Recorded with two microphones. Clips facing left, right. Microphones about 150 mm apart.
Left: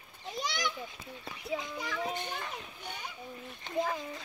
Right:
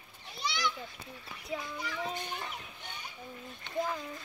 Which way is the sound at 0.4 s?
45° left (ahead or behind).